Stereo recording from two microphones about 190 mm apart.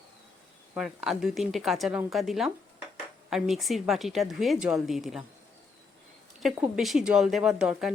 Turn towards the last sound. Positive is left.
turn(degrees=-5)  # may be behind; listen again after turning